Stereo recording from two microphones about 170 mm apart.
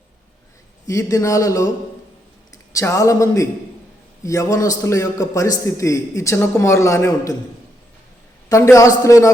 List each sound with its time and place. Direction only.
0.9 s a man's voice: 20° left (ahead or behind)
2.7 s a man's voice: 20° left (ahead or behind)
8.4 s a man's voice: 20° left (ahead or behind)